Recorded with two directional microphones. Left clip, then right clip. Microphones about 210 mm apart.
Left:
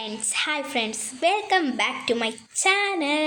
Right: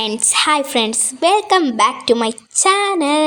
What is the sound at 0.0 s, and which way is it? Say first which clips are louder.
A woman's voice: right 11 dB; 40° right (ahead or behind).